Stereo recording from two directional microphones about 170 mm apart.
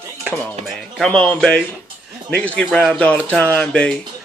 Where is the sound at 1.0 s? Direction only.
10° left (ahead or behind).